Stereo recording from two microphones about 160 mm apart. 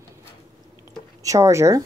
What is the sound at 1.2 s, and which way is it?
Speech, 20° right (ahead or behind).